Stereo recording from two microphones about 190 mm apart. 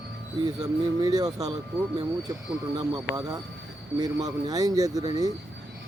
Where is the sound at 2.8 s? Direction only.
20° right (ahead or behind).